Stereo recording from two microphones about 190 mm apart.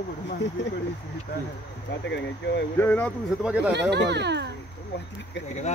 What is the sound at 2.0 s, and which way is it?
Speech, 65° left (ahead or behind).